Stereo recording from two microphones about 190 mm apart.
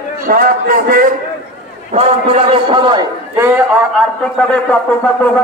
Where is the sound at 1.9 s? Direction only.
30° right (ahead or behind).